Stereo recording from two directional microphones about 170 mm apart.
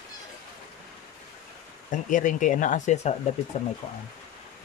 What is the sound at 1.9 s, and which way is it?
Speech, 50° left (ahead or behind).